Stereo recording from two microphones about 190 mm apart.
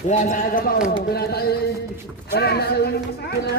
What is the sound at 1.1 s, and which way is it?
A man's voice, 55° left (ahead or behind).